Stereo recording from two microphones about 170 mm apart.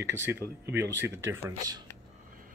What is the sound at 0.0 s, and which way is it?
Speech, 15° right (ahead or behind).